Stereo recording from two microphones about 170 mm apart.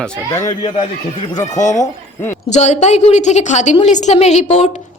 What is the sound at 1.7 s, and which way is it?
Speech, 20° left (ahead or behind).